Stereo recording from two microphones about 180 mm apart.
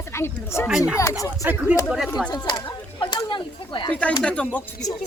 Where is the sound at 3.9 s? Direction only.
5° left (ahead or behind).